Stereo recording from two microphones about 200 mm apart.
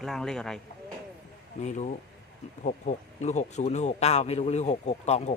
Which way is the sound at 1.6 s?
35° left (ahead or behind).